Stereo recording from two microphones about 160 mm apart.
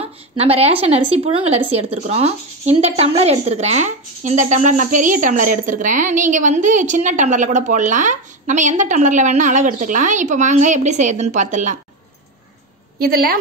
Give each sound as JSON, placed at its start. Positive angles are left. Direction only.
{"t": 0.0, "sound": "a woman's voice", "side_deg": -40}
{"t": 13.0, "sound": "a woman's voice", "side_deg": -70}